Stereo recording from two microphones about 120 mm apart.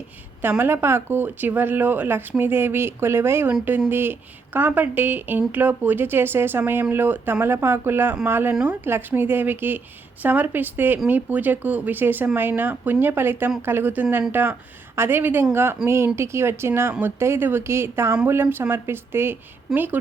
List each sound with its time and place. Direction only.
0.6 s a woman's voice: 20° right (ahead or behind)